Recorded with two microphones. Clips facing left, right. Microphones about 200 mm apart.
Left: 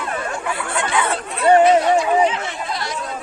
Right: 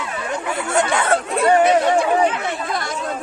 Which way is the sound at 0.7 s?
45° right (ahead or behind).